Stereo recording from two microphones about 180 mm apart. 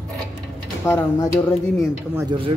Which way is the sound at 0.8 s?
15° left (ahead or behind).